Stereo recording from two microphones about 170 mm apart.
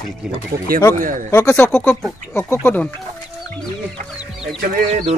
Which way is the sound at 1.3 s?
15° left (ahead or behind).